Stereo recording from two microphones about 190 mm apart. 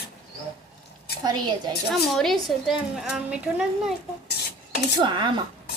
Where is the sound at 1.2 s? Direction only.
20° right (ahead or behind).